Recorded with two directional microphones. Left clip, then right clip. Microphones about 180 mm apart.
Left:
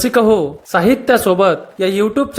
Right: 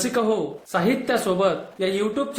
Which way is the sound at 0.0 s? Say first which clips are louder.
Left 10 dB; 40° left (ahead or behind).